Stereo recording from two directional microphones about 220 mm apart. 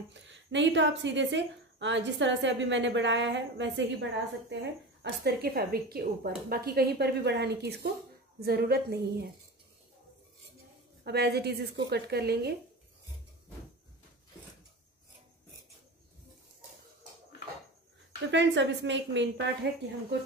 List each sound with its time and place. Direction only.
0.1 s a woman's voice: 55° right (ahead or behind)
11.1 s a woman's voice: 45° right (ahead or behind)
18.3 s a woman's voice: 55° right (ahead or behind)